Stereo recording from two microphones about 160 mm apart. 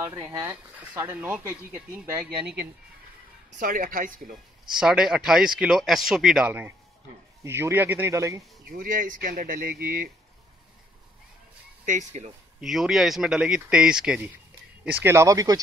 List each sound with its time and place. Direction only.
0.0 s speech: 20° right (ahead or behind)
2.3 s speech: 90° right
3.5 s speech: 60° right (ahead or behind)
4.7 s speech: 5° right (ahead or behind); by 8.5 s 20° right (ahead or behind)
8.6 s speech: 60° right (ahead or behind)
11.8 s speech: 50° right (ahead or behind)
12.5 s speech: centre (ahead or behind); by 15.6 s 20° right (ahead or behind)